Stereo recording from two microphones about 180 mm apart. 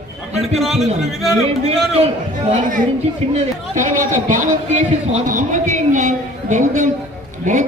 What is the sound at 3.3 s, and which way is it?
A man's voice, 45° right (ahead or behind).